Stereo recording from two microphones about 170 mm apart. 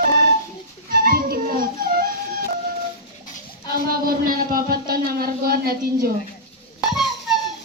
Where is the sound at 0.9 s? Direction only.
60° right (ahead or behind).